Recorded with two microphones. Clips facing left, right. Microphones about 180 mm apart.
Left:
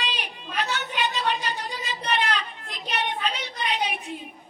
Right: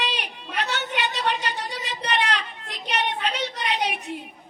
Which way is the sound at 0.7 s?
70° right (ahead or behind).